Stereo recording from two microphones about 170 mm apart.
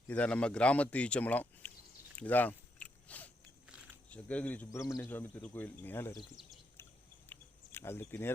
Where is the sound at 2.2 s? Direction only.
10° left (ahead or behind).